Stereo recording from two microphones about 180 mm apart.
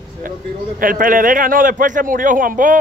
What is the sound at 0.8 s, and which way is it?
A man's voice, 50° right (ahead or behind).